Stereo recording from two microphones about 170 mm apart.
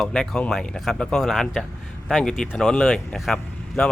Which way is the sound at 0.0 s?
5° left (ahead or behind).